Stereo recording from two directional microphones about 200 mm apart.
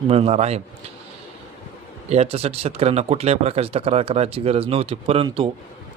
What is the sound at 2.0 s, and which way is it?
Speech, 30° right (ahead or behind).